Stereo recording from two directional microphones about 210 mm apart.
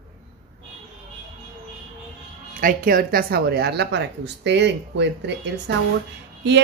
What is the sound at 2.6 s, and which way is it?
Speech, 45° right (ahead or behind).